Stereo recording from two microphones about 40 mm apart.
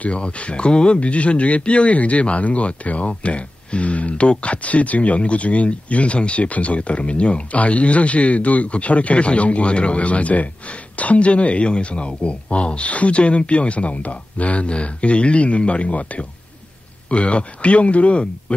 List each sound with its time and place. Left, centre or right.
0.0 s a man's voice: left